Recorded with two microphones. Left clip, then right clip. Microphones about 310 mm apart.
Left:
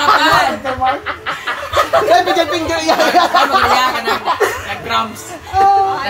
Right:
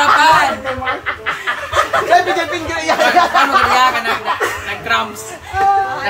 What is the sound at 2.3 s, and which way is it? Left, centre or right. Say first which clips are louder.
Speech: left 3 dB; left.